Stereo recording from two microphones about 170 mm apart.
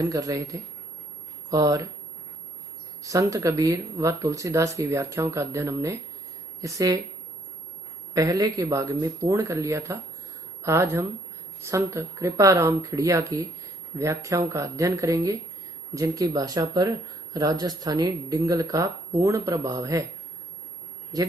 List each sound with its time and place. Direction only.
0.0 s speech: 20° right (ahead or behind)
3.0 s speech: 20° right (ahead or behind)
8.1 s a woman's voice: 20° right (ahead or behind)
21.1 s speech: 20° right (ahead or behind)